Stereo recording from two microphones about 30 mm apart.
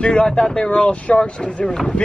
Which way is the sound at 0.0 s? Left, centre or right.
Left.